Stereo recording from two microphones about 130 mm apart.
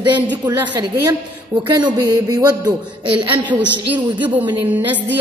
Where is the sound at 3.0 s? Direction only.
45° right (ahead or behind).